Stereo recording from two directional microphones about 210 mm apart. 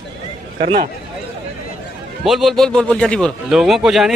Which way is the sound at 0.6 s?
25° right (ahead or behind).